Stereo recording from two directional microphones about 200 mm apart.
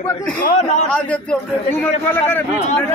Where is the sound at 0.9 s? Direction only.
5° left (ahead or behind).